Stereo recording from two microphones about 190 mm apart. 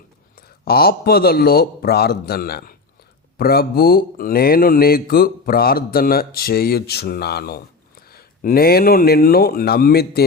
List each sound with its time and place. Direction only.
0.3 s speech: 55° left (ahead or behind)